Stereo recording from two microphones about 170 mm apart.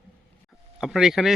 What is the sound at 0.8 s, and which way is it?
Speech, centre (ahead or behind).